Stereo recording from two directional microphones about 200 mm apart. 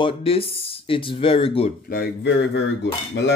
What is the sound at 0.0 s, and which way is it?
Speech, 30° left (ahead or behind).